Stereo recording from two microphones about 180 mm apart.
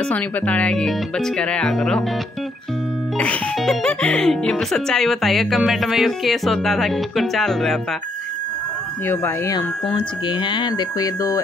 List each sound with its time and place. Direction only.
0.1 s speech: 5° left (ahead or behind)
3.2 s speech: 5° left (ahead or behind)
9.0 s speech: 15° left (ahead or behind)
9.9 s speech: 25° left (ahead or behind)